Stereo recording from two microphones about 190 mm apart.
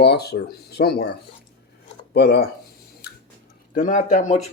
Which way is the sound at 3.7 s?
45° left (ahead or behind).